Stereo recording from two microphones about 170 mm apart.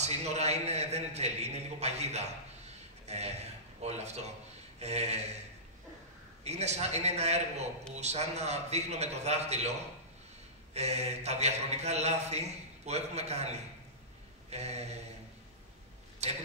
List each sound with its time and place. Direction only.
0.0 s a man's voice: 40° right (ahead or behind)
6.4 s speech: 40° right (ahead or behind)
10.7 s speech: 40° right (ahead or behind)
16.2 s speech: 40° right (ahead or behind)